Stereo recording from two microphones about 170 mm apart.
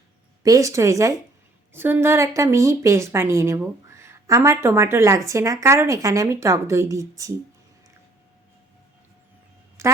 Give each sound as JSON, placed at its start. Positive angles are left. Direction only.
{"t": 0.4, "sound": "a woman's voice", "side_deg": -20}
{"t": 9.8, "sound": "a woman's voice", "side_deg": -15}